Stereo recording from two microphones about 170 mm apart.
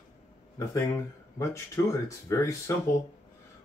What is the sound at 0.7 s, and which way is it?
Speech, 20° left (ahead or behind).